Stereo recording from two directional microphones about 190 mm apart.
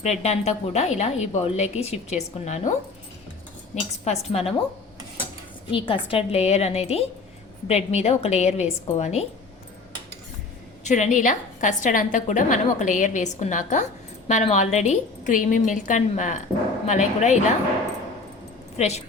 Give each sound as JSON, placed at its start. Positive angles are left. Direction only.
{"t": 0.0, "sound": "a woman's voice", "side_deg": 35}
{"t": 4.0, "sound": "a woman's voice", "side_deg": 35}
{"t": 5.7, "sound": "a woman's voice", "side_deg": 30}
{"t": 10.8, "sound": "a woman's voice", "side_deg": 40}
{"t": 18.8, "sound": "a woman's voice", "side_deg": 35}